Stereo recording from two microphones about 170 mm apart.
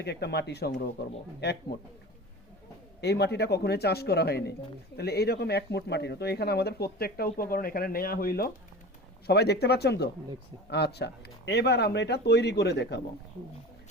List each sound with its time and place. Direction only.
0.0 s speech: 80° left
3.0 s speech: 75° left (ahead or behind); by 8.4 s 60° left (ahead or behind)
9.2 s speech: 75° left (ahead or behind)